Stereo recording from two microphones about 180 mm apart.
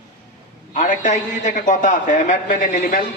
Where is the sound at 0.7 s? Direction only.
45° left (ahead or behind).